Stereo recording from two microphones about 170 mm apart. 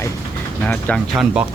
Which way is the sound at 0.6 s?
5° left (ahead or behind).